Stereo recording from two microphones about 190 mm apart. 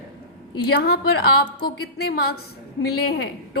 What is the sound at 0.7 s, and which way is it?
A woman's voice, 55° left (ahead or behind).